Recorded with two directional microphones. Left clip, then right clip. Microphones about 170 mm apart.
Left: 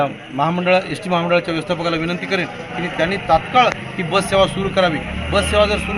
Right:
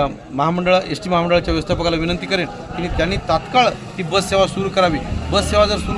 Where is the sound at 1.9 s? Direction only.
65° right (ahead or behind).